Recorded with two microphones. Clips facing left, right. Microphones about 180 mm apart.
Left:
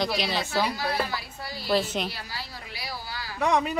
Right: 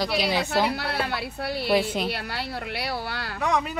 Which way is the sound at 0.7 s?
65° right (ahead or behind).